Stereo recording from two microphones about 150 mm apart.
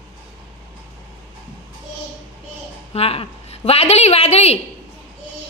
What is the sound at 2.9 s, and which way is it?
Speech, 40° left (ahead or behind).